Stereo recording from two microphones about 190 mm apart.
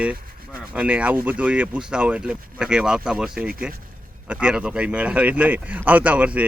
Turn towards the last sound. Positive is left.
turn(degrees=-5)  # may be behind; listen again after turning